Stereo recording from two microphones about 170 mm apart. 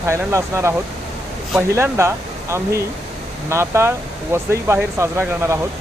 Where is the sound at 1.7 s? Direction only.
15° right (ahead or behind).